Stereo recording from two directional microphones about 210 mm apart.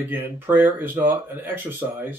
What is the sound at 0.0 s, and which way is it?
Speech, 10° right (ahead or behind).